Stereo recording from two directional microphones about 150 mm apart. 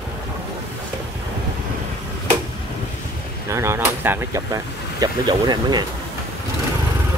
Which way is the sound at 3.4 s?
20° right (ahead or behind).